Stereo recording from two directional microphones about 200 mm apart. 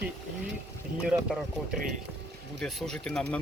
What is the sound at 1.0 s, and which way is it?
Speech, 5° right (ahead or behind).